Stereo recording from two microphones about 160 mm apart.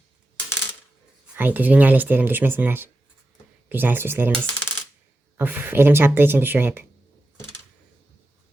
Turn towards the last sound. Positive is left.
turn(degrees=-15)  # may be behind; listen again after turning